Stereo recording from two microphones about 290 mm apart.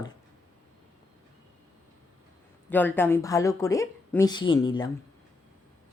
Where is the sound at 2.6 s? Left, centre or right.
Centre.